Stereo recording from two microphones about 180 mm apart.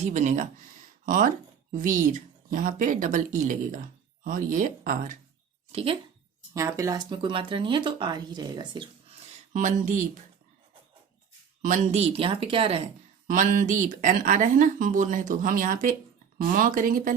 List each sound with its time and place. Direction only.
0.0 s speech: 40° right (ahead or behind)
5.7 s speech: 30° right (ahead or behind)
6.5 s speech: 15° right (ahead or behind)
9.5 s speech: 45° right (ahead or behind)
11.6 s speech: 40° right (ahead or behind)
13.2 s speech: 45° right (ahead or behind)